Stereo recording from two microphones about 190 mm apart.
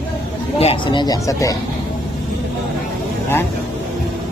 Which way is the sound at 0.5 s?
30° left (ahead or behind).